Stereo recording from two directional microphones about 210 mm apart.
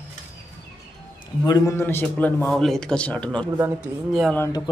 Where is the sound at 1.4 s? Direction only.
15° left (ahead or behind).